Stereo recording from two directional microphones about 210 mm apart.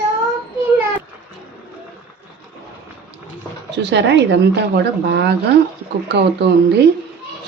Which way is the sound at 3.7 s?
55° right (ahead or behind).